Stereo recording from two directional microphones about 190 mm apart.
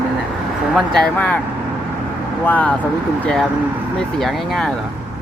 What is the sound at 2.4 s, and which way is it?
Speech, 10° left (ahead or behind).